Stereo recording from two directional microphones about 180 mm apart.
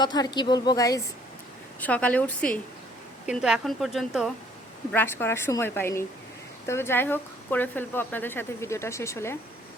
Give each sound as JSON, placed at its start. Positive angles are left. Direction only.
{"t": 0.0, "sound": "a woman's voice", "side_deg": 25}
{"t": 1.8, "sound": "speech", "side_deg": 10}
{"t": 3.2, "sound": "a woman's voice", "side_deg": -5}
{"t": 4.9, "sound": "speech", "side_deg": 10}